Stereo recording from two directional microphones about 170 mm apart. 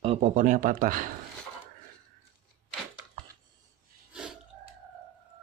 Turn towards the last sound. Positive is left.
turn(degrees=-5)  # may be behind; listen again after turning